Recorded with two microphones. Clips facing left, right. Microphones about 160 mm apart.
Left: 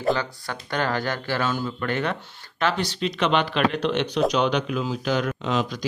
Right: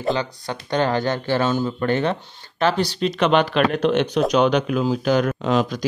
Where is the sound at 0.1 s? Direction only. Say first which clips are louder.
Right 2 dB; 20° right (ahead or behind).